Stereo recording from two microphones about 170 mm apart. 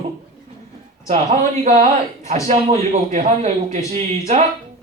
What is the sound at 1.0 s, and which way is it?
A man's voice, 40° right (ahead or behind).